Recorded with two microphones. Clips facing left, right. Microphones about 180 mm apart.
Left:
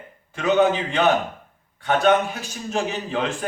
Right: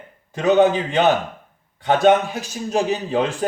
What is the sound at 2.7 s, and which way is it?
Speech, 35° right (ahead or behind).